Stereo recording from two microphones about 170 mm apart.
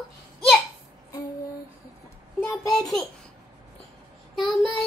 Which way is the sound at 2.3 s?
20° left (ahead or behind).